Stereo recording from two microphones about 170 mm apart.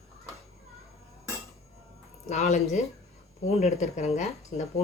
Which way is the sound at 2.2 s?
45° left (ahead or behind).